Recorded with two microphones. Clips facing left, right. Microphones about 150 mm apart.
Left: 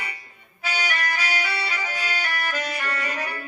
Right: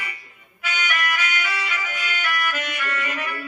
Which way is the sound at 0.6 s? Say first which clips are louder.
Even; 35° left (ahead or behind).